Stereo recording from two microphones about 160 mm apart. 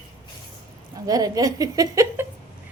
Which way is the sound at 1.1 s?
25° right (ahead or behind).